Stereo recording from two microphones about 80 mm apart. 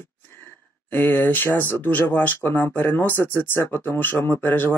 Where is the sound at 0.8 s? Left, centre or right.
Left.